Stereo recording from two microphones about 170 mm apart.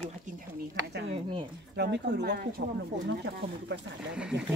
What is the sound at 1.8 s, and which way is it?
Speech, 80° right.